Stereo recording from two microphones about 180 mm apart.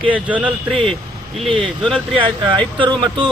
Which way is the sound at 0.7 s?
5° left (ahead or behind).